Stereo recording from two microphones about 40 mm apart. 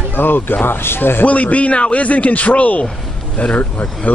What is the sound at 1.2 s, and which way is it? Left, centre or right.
Speech, left.